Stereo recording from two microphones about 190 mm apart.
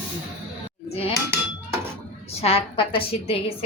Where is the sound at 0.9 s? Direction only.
30° left (ahead or behind).